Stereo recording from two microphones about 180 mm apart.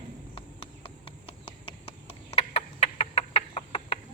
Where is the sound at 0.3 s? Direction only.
30° left (ahead or behind).